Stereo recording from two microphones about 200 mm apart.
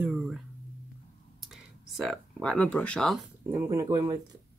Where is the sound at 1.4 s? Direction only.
Centre (ahead or behind).